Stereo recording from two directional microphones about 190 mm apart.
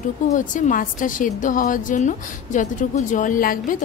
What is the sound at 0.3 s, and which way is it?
A woman's voice, 40° left (ahead or behind).